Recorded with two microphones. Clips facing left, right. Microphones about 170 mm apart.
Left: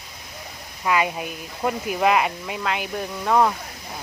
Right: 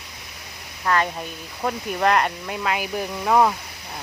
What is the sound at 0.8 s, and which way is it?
Speech, 10° left (ahead or behind).